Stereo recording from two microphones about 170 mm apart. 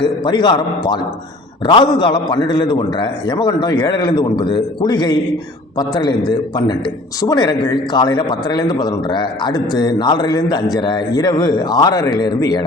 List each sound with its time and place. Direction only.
0.0 s a man's voice: 25° left (ahead or behind)